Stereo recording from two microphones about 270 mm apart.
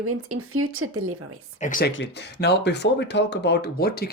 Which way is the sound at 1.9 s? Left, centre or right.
Left.